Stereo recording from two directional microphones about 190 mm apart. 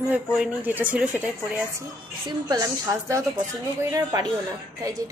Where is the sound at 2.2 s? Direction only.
20° right (ahead or behind).